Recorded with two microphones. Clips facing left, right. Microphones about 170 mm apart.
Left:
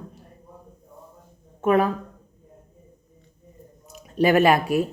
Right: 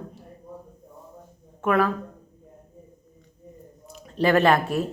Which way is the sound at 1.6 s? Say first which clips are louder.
Left 2 dB; 20° left (ahead or behind).